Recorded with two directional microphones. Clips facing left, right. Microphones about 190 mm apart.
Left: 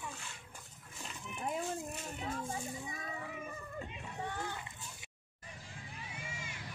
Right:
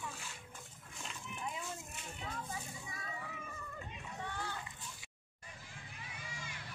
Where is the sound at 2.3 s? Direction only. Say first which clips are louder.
Left 4 dB; 45° left (ahead or behind).